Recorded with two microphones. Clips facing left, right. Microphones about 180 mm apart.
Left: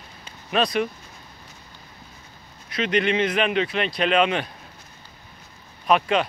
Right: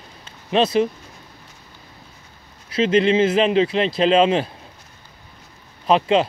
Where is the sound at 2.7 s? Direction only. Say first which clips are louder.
Right 6 dB; 30° right (ahead or behind).